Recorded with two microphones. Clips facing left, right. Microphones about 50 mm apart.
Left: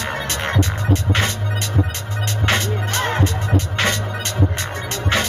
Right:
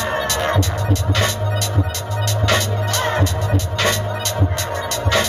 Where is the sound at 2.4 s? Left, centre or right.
Left.